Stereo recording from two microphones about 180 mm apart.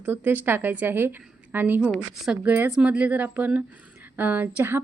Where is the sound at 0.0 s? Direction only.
10° right (ahead or behind).